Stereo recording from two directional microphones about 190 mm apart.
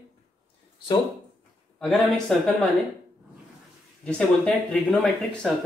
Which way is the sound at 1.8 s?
Centre (ahead or behind).